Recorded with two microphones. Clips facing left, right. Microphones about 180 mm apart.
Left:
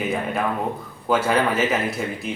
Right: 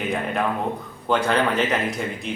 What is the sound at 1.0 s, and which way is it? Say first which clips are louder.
A man's voice: left 1 dB; 5° left (ahead or behind).